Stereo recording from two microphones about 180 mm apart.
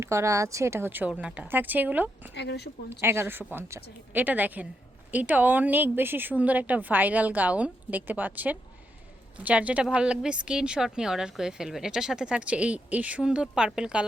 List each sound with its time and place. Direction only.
0.0 s a woman's voice: 15° right (ahead or behind)
2.3 s speech: 70° left (ahead or behind)
3.0 s a woman's voice: 15° right (ahead or behind)